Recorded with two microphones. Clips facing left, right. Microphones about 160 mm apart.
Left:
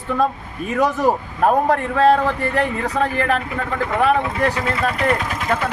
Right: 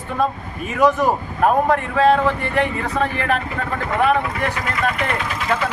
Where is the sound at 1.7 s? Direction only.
35° left (ahead or behind).